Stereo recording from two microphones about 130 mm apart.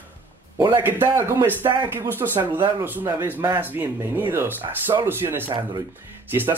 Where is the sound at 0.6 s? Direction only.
35° right (ahead or behind).